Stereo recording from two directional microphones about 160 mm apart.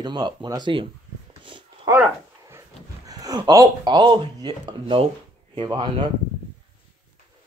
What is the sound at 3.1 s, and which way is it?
Speech, 25° right (ahead or behind).